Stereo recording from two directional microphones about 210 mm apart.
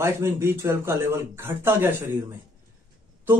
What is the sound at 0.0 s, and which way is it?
Speech, 10° right (ahead or behind).